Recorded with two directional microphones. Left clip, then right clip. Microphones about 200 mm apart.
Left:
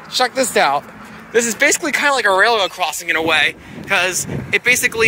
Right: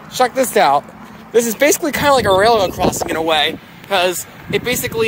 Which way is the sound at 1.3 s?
25° right (ahead or behind).